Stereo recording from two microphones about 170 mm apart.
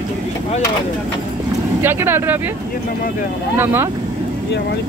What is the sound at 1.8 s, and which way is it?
Speech, 15° right (ahead or behind).